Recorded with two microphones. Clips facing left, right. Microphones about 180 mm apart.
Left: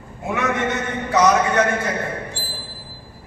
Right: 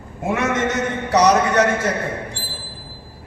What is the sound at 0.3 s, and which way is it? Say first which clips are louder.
Speech: right 2 dB; 40° right (ahead or behind).